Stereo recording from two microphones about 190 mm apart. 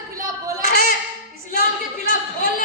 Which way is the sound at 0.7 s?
45° left (ahead or behind).